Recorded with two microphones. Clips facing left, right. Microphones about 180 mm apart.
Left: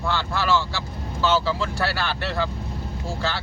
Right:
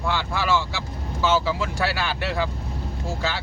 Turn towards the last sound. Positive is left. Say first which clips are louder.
# even
turn(degrees=-15)  # may be behind; listen again after turning